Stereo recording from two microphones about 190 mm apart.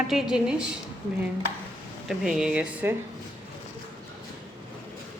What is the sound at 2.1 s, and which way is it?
Speech, 5° right (ahead or behind).